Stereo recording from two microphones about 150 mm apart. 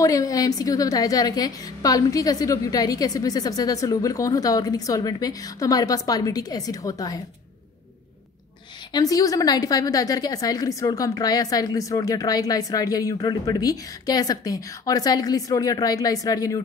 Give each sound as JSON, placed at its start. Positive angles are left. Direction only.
{"t": 0.0, "sound": "a woman's voice", "side_deg": 25}
{"t": 8.9, "sound": "a woman's voice", "side_deg": 25}